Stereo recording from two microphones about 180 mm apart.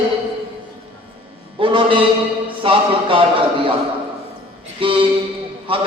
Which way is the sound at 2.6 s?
30° right (ahead or behind).